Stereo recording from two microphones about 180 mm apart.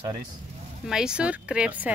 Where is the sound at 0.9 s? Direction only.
5° right (ahead or behind).